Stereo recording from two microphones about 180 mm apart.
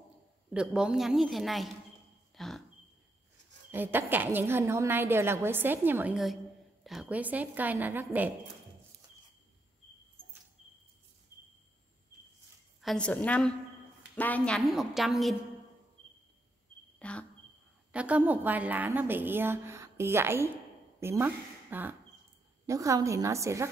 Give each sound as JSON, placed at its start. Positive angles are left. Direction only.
{"t": 0.5, "sound": "a woman's voice", "side_deg": -5}
{"t": 2.3, "sound": "a sound", "side_deg": 0}
{"t": 3.7, "sound": "a woman's voice", "side_deg": -10}
{"t": 12.8, "sound": "a woman's voice", "side_deg": 5}
{"t": 17.0, "sound": "a sound", "side_deg": 5}
{"t": 17.9, "sound": "a woman's voice", "side_deg": -10}